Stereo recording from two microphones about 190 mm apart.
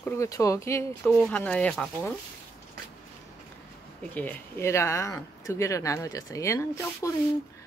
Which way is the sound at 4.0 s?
10° left (ahead or behind).